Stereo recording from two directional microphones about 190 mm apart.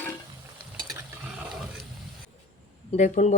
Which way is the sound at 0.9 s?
10° right (ahead or behind).